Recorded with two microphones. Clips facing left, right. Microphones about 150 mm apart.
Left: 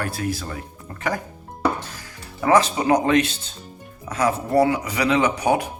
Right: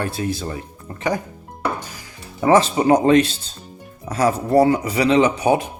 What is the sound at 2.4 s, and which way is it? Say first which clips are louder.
Speech: right 3 dB; 25° right (ahead or behind).